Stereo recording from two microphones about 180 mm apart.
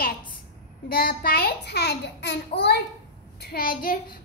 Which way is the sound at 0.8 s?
55° left (ahead or behind).